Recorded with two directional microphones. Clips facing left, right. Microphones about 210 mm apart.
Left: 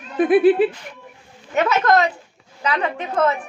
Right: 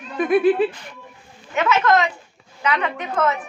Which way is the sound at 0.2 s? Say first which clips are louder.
Left 3 dB; 30° left (ahead or behind).